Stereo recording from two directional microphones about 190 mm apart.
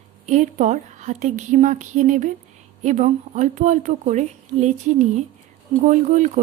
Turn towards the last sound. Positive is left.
turn(degrees=-40)  # may be behind; listen again after turning